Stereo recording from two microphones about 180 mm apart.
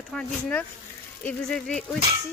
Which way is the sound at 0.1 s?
10° left (ahead or behind).